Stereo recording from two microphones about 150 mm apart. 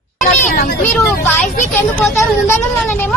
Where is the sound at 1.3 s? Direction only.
10° left (ahead or behind).